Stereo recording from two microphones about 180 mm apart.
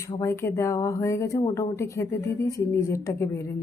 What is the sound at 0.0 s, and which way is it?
A woman's voice, 15° left (ahead or behind).